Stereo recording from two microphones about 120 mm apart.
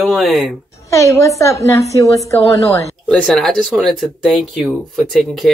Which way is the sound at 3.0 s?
5° left (ahead or behind).